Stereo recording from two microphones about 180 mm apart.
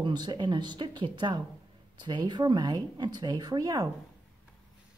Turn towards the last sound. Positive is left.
turn(degrees=-20)  # may be behind; listen again after turning